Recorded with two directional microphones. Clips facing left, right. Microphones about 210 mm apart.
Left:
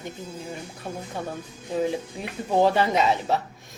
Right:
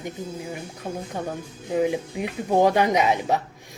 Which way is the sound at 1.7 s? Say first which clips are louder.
Right 3 dB; 15° right (ahead or behind).